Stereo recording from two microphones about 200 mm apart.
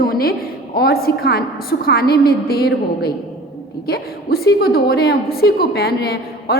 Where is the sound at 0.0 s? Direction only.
50° left (ahead or behind).